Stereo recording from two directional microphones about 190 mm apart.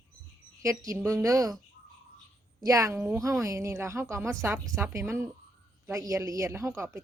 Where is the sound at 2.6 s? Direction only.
15° right (ahead or behind).